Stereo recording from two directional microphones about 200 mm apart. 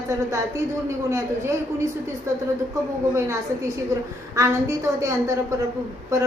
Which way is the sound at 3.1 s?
15° right (ahead or behind).